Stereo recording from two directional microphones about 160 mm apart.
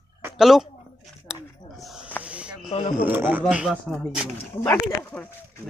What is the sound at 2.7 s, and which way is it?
Speech, 40° left (ahead or behind).